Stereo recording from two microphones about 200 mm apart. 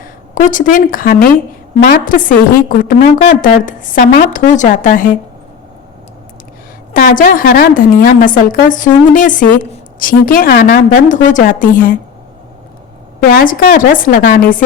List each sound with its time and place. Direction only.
0.4 s a woman's voice: 40° left (ahead or behind)
6.9 s a woman's voice: 45° left (ahead or behind)
13.1 s a woman's voice: 50° left (ahead or behind)